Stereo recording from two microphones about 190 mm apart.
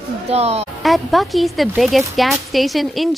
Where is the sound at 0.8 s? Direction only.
Centre (ahead or behind).